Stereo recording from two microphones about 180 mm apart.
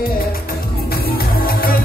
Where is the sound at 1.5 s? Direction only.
55° left (ahead or behind).